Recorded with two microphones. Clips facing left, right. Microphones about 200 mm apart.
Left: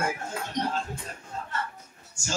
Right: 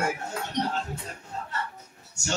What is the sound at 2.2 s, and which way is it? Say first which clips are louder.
Speech: right 3 dB; 70° right (ahead or behind).